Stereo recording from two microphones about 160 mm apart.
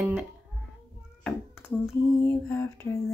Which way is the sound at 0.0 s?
5° right (ahead or behind).